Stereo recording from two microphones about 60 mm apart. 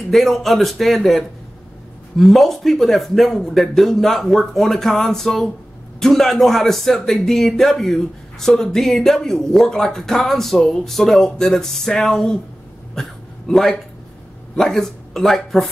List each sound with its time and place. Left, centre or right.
0.1 s speech: centre